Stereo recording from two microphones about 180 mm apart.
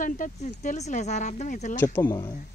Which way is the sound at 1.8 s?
10° left (ahead or behind).